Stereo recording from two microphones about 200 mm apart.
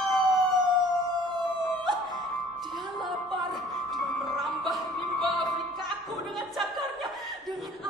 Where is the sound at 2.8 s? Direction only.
20° right (ahead or behind).